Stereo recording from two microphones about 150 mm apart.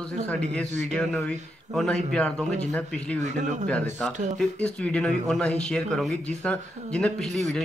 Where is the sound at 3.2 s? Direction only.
55° right (ahead or behind).